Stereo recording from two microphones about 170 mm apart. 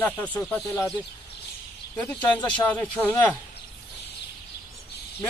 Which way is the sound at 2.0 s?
10° left (ahead or behind).